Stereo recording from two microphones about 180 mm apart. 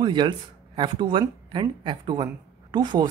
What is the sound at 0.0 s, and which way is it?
Speech, 25° right (ahead or behind).